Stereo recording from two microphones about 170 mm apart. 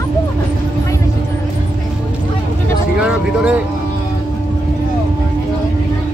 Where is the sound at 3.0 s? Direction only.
5° right (ahead or behind).